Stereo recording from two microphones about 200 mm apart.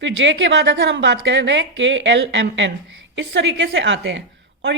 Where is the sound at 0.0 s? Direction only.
65° right (ahead or behind).